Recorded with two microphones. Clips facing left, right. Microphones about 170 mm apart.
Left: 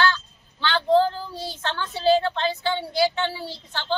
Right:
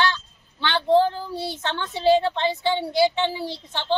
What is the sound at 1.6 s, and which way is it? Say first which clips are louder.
A woman's voice: right 1 dB; 20° right (ahead or behind).